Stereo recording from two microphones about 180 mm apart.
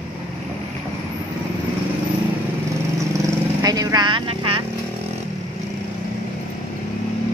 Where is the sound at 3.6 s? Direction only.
20° right (ahead or behind).